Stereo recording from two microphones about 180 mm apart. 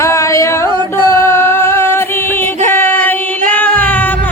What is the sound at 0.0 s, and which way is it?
Music, 15° left (ahead or behind).